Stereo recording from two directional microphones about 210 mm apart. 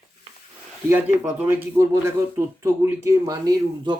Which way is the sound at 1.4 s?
10° right (ahead or behind).